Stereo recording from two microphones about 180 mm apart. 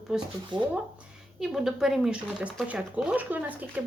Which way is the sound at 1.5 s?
Centre (ahead or behind).